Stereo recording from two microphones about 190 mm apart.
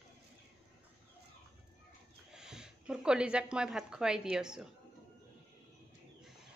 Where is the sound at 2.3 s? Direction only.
5° right (ahead or behind).